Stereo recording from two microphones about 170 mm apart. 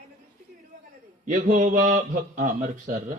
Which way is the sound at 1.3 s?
45° right (ahead or behind).